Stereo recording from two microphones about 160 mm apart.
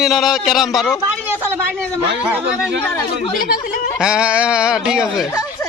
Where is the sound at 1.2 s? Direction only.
15° right (ahead or behind).